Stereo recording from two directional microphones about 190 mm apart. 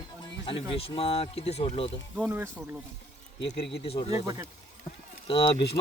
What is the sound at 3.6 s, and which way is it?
Speech, 30° left (ahead or behind).